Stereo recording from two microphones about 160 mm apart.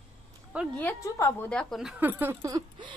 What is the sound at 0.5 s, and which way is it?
Speech, 10° right (ahead or behind).